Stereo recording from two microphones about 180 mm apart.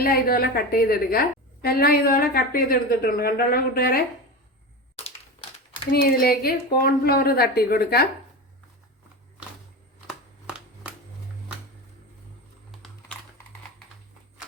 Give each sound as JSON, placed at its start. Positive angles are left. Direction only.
{"t": 0.0, "sound": "a woman's voice", "side_deg": 55}
{"t": 5.9, "sound": "a woman's voice", "side_deg": 55}
{"t": 10.1, "sound": "a sound", "side_deg": -5}